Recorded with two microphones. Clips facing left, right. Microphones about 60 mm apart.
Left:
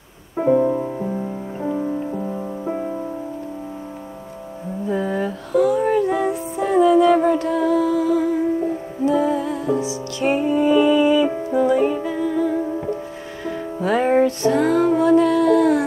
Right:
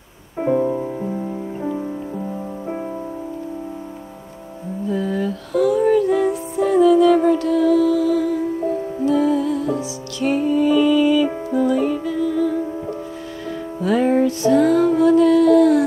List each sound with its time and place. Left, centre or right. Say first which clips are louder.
0.4 s music: left 2 dB; centre
2.6 s music: left 3 dB; centre
4.8 s music: even; left
13.8 s music: even; left